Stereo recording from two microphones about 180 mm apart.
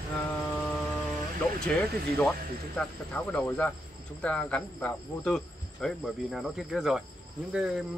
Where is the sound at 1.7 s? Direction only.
10° left (ahead or behind).